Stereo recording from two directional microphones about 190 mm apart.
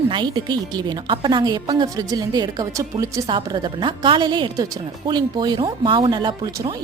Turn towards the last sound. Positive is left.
turn(degrees=-20)  # may be behind; listen again after turning